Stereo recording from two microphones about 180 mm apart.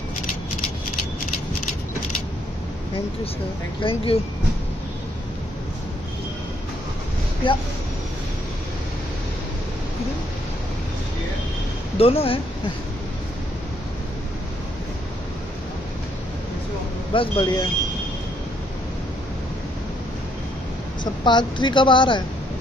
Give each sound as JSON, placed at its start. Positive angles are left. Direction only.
{"t": 3.8, "sound": "speech", "side_deg": 30}
{"t": 7.4, "sound": "a woman's voice", "side_deg": 30}
{"t": 12.0, "sound": "speech", "side_deg": 30}
{"t": 17.1, "sound": "a woman's voice", "side_deg": 30}
{"t": 21.0, "sound": "a woman's voice", "side_deg": 25}